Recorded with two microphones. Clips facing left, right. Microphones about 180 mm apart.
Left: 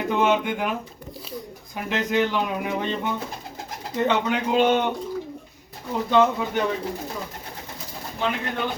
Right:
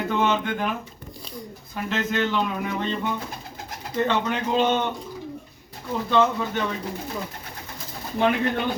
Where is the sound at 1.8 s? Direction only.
15° left (ahead or behind).